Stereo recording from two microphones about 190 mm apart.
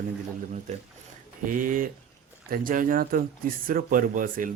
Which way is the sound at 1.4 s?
45° right (ahead or behind).